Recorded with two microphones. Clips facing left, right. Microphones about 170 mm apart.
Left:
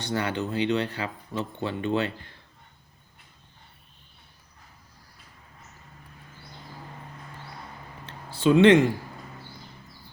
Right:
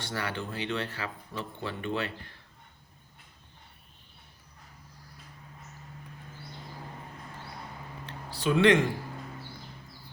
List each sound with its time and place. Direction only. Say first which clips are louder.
0.0 s speech: left 6 dB; 20° left (ahead or behind)
8.3 s speech: left 6 dB; 25° left (ahead or behind)